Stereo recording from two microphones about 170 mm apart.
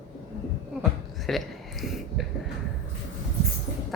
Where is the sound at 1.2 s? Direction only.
Centre (ahead or behind).